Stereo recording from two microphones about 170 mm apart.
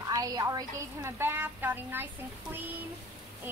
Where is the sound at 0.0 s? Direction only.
20° right (ahead or behind).